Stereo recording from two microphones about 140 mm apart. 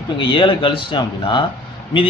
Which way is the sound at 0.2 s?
35° left (ahead or behind).